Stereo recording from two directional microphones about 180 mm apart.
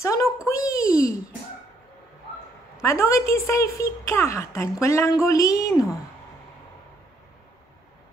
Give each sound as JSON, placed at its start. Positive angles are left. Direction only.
{"t": 0.0, "sound": "a woman's voice", "side_deg": 15}
{"t": 0.5, "sound": "a sound", "side_deg": 15}
{"t": 2.8, "sound": "a woman's voice", "side_deg": 15}